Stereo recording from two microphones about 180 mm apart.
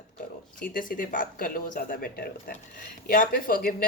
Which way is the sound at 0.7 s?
50° left (ahead or behind).